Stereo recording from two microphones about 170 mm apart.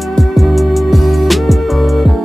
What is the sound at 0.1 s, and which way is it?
Music, centre (ahead or behind).